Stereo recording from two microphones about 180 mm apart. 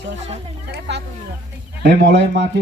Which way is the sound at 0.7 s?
70° right (ahead or behind).